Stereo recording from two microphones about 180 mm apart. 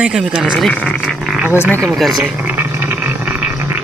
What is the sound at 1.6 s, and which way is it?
Speech, 15° right (ahead or behind).